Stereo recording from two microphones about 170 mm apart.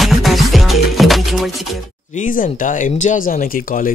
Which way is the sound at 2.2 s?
50° left (ahead or behind).